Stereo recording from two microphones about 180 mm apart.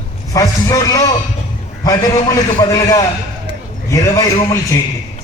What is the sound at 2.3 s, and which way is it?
A man's voice, 20° left (ahead or behind).